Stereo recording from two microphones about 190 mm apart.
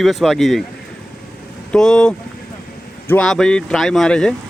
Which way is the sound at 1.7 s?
5° left (ahead or behind).